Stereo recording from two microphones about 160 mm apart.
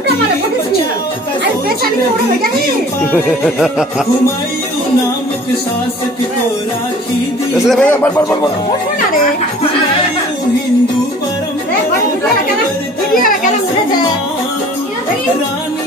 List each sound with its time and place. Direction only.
3.1 s speech: centre (ahead or behind)
7.5 s speech: centre (ahead or behind)
13.2 s chatter: 60° left (ahead or behind)